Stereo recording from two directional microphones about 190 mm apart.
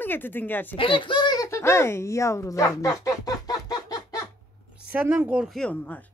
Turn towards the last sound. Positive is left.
turn(degrees=10)  # may be behind; listen again after turning